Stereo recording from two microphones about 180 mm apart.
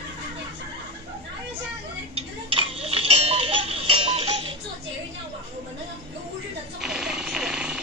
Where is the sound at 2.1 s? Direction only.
30° right (ahead or behind).